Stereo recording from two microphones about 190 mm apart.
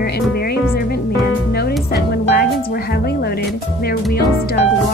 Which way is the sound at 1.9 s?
55° left (ahead or behind).